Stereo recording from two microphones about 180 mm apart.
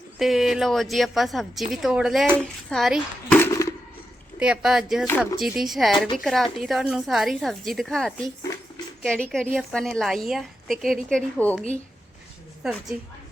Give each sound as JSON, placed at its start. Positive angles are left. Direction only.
{"t": 0.2, "sound": "a woman's voice", "side_deg": 0}
{"t": 3.3, "sound": "a sound", "side_deg": 15}
{"t": 4.4, "sound": "a woman's voice", "side_deg": -5}
{"t": 12.6, "sound": "a woman's voice", "side_deg": 0}